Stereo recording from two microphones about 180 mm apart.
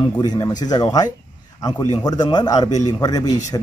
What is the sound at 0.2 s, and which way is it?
Speech, 25° left (ahead or behind).